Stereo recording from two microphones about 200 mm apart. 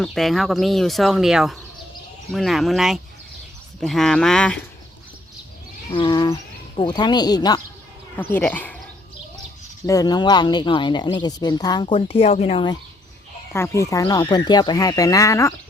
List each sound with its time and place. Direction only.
0.0 s speech: centre (ahead or behind)
5.9 s speech: 25° left (ahead or behind)
8.1 s speech: 10° left (ahead or behind)
9.8 s speech: 15° left (ahead or behind)
13.5 s speech: 15° left (ahead or behind)